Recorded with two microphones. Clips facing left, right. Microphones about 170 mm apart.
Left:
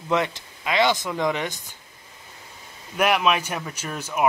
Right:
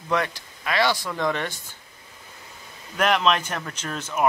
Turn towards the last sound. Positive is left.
turn(degrees=10)  # may be behind; listen again after turning